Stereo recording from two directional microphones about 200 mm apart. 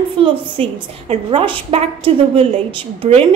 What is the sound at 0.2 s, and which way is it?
A woman's voice, 30° right (ahead or behind).